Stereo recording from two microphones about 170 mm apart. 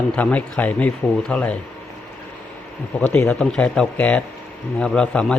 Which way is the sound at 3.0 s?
10° left (ahead or behind).